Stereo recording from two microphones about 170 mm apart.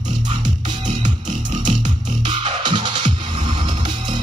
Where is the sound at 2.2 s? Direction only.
30° right (ahead or behind).